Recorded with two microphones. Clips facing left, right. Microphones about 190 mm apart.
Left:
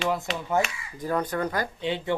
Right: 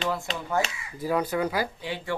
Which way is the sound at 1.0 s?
10° right (ahead or behind).